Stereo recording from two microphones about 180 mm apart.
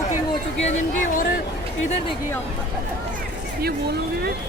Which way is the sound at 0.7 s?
45° left (ahead or behind).